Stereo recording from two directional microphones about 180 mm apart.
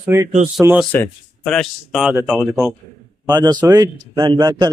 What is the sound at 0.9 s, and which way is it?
Speech, 5° left (ahead or behind).